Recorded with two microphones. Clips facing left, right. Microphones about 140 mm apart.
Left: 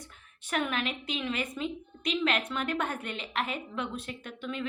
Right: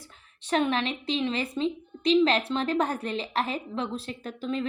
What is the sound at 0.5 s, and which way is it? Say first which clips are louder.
A woman's voice: right 6 dB; 30° right (ahead or behind).